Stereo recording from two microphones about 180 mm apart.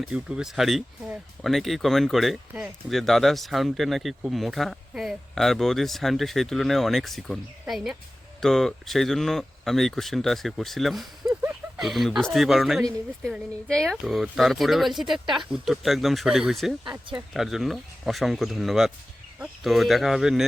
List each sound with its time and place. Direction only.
0.0 s speech: 5° right (ahead or behind)
16.8 s speech: 25° right (ahead or behind)
17.2 s speech: centre (ahead or behind)